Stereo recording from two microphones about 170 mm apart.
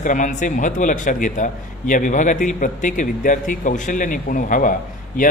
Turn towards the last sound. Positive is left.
turn(degrees=50)  # may be behind; listen again after turning